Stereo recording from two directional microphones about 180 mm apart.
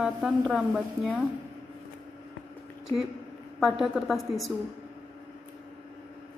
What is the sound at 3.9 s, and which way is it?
Speech, centre (ahead or behind).